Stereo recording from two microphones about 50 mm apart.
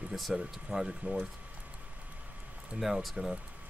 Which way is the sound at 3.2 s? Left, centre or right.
Centre.